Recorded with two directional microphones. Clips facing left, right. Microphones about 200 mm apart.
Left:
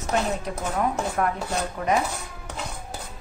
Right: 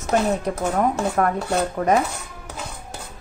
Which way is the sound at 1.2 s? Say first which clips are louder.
Right 6 dB; 50° right (ahead or behind).